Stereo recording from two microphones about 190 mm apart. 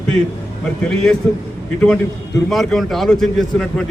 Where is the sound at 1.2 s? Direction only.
10° left (ahead or behind).